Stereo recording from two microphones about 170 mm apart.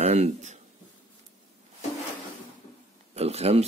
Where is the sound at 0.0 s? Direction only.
40° right (ahead or behind).